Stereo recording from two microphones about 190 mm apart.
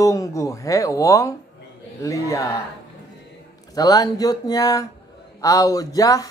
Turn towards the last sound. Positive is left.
turn(degrees=20)  # may be behind; listen again after turning